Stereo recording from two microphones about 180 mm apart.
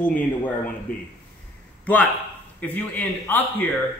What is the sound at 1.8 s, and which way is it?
A man's voice, 10° left (ahead or behind).